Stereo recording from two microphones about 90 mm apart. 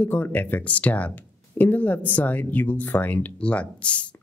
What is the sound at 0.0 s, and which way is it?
Speech, 20° left (ahead or behind).